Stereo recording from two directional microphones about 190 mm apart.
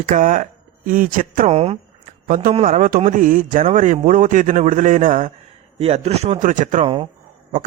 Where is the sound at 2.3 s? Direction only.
45° right (ahead or behind).